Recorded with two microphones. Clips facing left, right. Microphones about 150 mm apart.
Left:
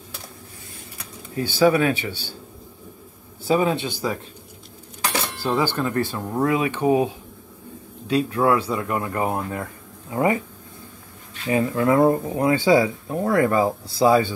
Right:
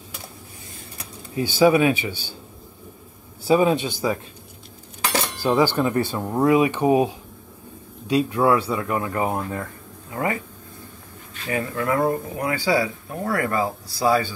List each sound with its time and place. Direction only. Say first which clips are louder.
1.3 s speech: right 1 dB; 15° right (ahead or behind)
3.4 s speech: right 2 dB; 15° right (ahead or behind)
5.4 s speech: right 4 dB; 10° right (ahead or behind)
8.1 s speech: right 1 dB; 10° right (ahead or behind); by 9.7 s 5° left (ahead or behind)
10.0 s speech: left 5 dB; 25° left (ahead or behind)
11.4 s speech: left 5 dB; 20° left (ahead or behind)